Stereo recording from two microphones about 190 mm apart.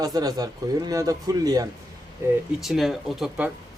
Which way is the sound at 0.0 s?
20° right (ahead or behind).